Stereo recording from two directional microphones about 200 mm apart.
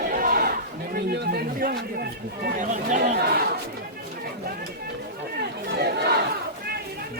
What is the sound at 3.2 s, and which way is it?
Speech, 50° right (ahead or behind).